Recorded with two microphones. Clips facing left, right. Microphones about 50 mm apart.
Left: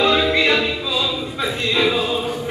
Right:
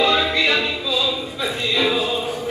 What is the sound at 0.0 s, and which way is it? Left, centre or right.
Music, centre.